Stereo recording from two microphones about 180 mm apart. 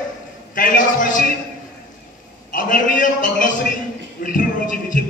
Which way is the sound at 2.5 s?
45° left (ahead or behind).